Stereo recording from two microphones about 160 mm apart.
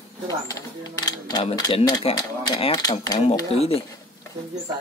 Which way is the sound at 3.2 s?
40° left (ahead or behind).